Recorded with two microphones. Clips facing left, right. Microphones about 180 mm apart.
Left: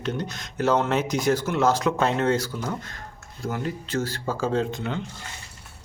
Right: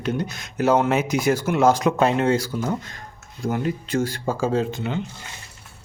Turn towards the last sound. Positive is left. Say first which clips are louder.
# right 2 dB
turn(degrees=-5)  # may be behind; listen again after turning